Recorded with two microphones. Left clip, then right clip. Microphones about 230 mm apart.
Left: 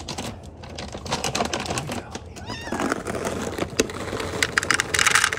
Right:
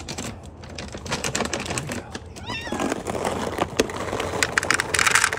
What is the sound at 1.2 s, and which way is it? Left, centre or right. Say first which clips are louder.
Typewriter: left 1 dB; centre.